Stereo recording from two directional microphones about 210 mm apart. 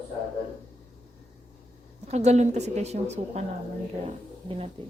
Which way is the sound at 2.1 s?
30° right (ahead or behind).